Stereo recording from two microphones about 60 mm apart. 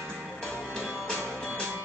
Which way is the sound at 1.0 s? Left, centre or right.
Centre.